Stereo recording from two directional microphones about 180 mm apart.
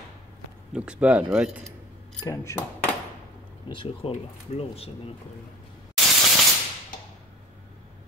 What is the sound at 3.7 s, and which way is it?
Speech, 30° left (ahead or behind).